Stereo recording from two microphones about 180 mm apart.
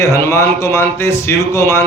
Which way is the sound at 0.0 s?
15° left (ahead or behind).